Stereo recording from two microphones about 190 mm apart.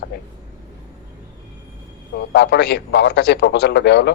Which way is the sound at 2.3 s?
60° left (ahead or behind).